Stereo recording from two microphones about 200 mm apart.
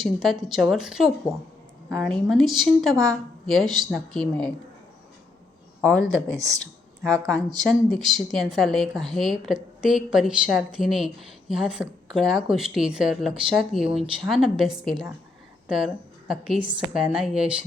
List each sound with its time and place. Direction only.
0.0 s a woman's voice: centre (ahead or behind)
5.8 s a woman's voice: 5° left (ahead or behind)
6.1 s speech: 15° right (ahead or behind)
7.6 s a woman's voice: centre (ahead or behind)